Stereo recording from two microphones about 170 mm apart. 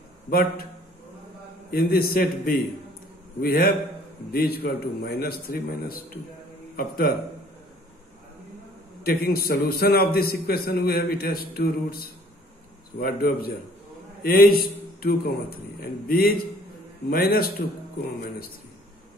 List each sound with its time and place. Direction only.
0.3 s a man's voice: 60° left (ahead or behind)
1.7 s a man's voice: 60° left (ahead or behind)
9.0 s a man's voice: 60° left (ahead or behind)